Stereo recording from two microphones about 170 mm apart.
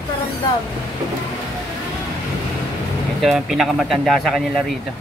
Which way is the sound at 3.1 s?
Centre (ahead or behind).